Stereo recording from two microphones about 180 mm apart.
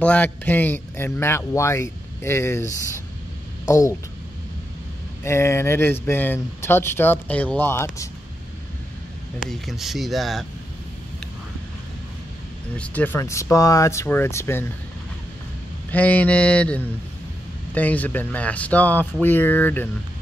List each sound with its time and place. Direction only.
0.0 s speech: 10° left (ahead or behind)
5.2 s speech: 15° left (ahead or behind)
9.5 s speech: centre (ahead or behind)
12.7 s speech: 5° left (ahead or behind)
15.9 s speech: 10° left (ahead or behind)